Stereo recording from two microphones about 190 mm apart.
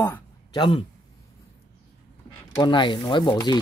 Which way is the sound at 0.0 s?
20° left (ahead or behind).